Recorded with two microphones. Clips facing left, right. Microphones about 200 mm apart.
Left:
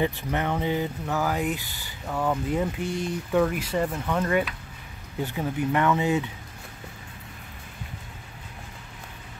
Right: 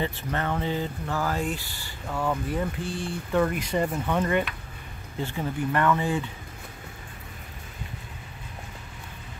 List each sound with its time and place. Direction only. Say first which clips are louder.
0.0 s speech: left 3 dB; 15° left (ahead or behind)
3.3 s speech: left 1 dB; 5° left (ahead or behind)
5.2 s speech: left 2 dB; 10° left (ahead or behind)